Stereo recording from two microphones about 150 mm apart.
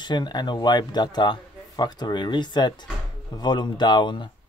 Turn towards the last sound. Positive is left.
turn(degrees=30)  # may be behind; listen again after turning